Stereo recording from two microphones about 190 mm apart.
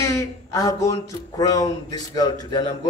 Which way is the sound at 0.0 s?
15° left (ahead or behind).